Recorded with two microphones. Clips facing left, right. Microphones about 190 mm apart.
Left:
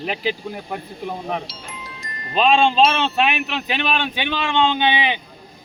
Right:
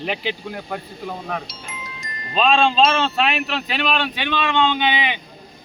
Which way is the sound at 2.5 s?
15° left (ahead or behind).